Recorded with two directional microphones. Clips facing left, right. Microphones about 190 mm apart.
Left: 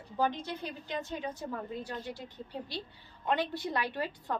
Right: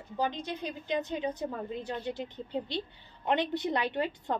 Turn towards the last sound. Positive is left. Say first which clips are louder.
# right 4 dB
turn(degrees=-20)  # may be behind; listen again after turning